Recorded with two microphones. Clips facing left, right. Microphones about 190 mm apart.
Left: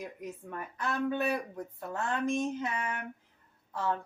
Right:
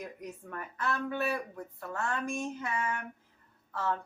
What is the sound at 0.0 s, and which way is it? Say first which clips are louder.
Speech: left 1 dB; 5° left (ahead or behind).